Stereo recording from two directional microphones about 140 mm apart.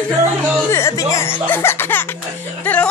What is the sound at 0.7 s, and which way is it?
Speech, 20° left (ahead or behind).